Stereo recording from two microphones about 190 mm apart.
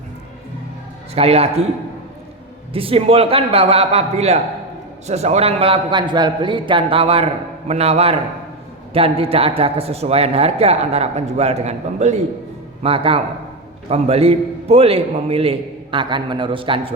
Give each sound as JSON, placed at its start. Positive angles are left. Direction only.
{"t": 1.1, "sound": "a man's voice", "side_deg": -35}
{"t": 2.7, "sound": "a man's voice", "side_deg": -30}